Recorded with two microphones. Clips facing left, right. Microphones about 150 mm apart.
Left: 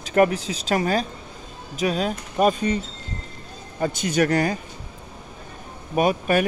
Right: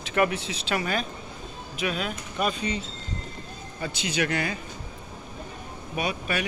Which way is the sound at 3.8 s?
45° left (ahead or behind).